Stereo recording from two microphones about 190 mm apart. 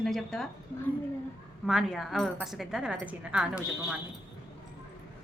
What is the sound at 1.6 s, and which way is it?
Speech, 5° right (ahead or behind).